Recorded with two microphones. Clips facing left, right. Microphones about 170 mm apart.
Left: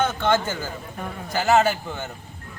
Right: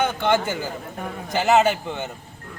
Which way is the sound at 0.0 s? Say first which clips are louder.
Right 1 dB; 15° right (ahead or behind).